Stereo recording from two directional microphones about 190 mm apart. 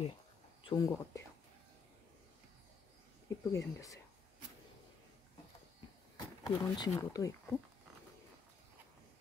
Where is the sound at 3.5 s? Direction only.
15° left (ahead or behind).